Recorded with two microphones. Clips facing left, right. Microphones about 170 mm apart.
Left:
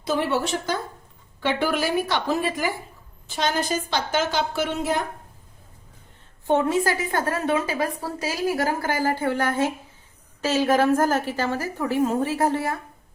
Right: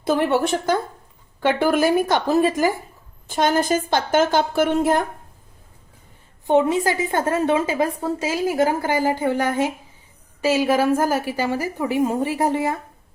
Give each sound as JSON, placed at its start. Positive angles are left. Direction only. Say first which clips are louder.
{"t": 0.0, "sound": "a woman's voice", "louder": "right 5 dB", "side_deg": -55}
{"t": 6.5, "sound": "a woman's voice", "louder": "right 3 dB", "side_deg": -15}